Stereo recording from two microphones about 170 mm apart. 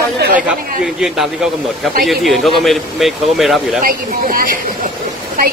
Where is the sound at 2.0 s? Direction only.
Centre (ahead or behind).